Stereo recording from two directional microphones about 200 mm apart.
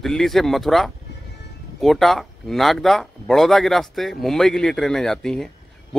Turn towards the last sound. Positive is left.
turn(degrees=0)  # may be behind; listen again after turning